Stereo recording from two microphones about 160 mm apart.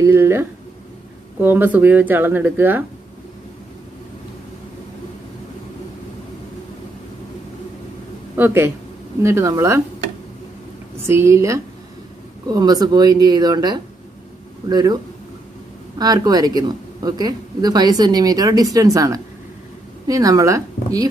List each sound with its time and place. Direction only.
0.0 s speech: 15° right (ahead or behind)
8.4 s speech: 15° right (ahead or behind)
11.1 s speech: 15° right (ahead or behind)
16.0 s speech: 25° right (ahead or behind)